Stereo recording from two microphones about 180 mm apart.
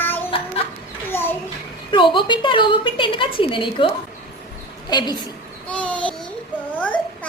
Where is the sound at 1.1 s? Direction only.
10° left (ahead or behind).